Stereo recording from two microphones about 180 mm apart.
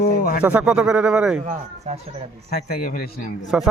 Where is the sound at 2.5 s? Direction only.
55° left (ahead or behind).